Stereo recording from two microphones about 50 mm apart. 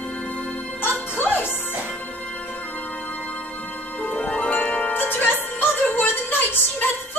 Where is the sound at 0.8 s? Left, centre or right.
Left.